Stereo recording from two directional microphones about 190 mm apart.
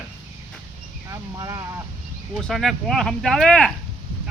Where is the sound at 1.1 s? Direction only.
20° right (ahead or behind).